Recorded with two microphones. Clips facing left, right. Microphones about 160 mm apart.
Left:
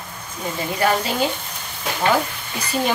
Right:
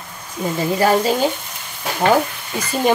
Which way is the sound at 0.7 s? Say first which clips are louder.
Right 4 dB; 35° right (ahead or behind).